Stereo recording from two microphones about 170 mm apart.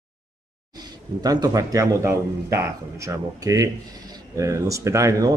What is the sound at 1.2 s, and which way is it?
Speech, 20° right (ahead or behind).